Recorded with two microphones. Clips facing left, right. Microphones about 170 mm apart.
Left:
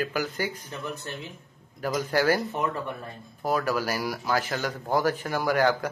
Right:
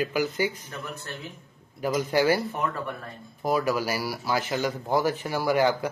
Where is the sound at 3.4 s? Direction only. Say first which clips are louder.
Right 1 dB; 10° right (ahead or behind).